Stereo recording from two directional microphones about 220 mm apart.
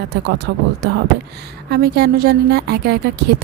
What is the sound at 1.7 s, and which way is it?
Speech, 45° right (ahead or behind).